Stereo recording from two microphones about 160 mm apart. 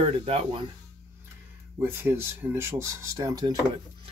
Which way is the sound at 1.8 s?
15° right (ahead or behind).